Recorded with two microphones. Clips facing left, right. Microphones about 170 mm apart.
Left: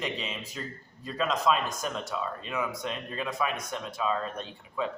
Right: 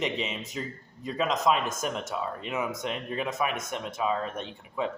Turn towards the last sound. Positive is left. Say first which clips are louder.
# right 1 dB
turn(degrees=-20)  # may be behind; listen again after turning